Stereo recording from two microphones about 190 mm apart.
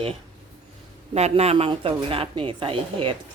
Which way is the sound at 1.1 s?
35° right (ahead or behind).